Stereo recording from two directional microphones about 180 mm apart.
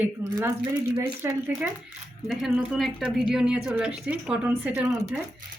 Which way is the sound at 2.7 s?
Centre (ahead or behind).